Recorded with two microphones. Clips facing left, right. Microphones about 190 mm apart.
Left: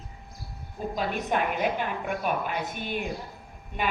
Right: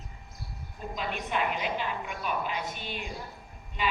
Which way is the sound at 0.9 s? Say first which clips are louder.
Left 4 dB; 45° left (ahead or behind).